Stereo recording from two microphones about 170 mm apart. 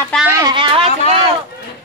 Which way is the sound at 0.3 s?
20° right (ahead or behind).